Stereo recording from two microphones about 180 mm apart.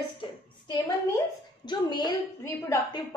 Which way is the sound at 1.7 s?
25° left (ahead or behind).